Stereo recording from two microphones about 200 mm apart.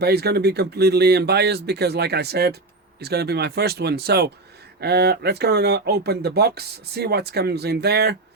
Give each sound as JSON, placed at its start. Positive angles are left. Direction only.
{"t": 0.0, "sound": "speech", "side_deg": -55}